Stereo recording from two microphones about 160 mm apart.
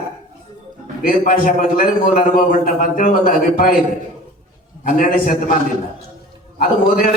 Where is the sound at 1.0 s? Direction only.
60° left (ahead or behind).